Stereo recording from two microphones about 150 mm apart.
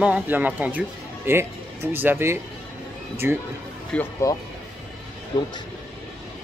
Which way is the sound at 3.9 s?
10° left (ahead or behind).